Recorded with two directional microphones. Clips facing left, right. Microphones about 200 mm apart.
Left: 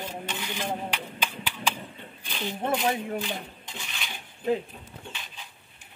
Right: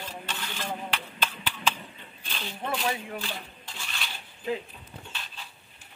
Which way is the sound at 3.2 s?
20° left (ahead or behind).